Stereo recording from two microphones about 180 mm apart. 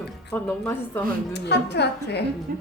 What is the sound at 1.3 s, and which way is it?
Speech, 70° left (ahead or behind).